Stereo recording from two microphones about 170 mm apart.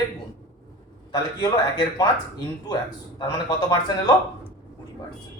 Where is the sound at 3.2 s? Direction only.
20° left (ahead or behind).